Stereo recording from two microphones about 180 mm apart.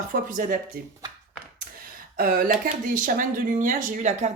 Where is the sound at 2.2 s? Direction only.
55° right (ahead or behind).